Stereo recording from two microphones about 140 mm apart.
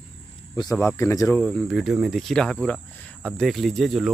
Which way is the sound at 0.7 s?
20° left (ahead or behind).